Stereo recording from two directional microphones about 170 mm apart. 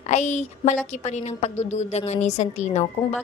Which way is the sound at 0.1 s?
45° left (ahead or behind).